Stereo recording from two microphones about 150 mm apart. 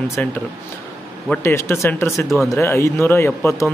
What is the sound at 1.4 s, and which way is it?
Speech, 20° left (ahead or behind).